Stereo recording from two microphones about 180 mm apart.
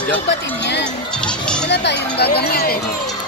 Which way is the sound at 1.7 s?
70° left (ahead or behind).